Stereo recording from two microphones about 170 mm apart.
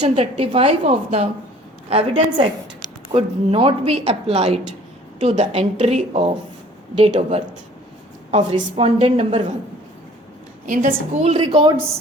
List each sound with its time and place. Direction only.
0.0 s a woman's voice: 30° right (ahead or behind)
10.7 s a woman's voice: 55° right (ahead or behind)
11.2 s a woman's voice: 35° right (ahead or behind)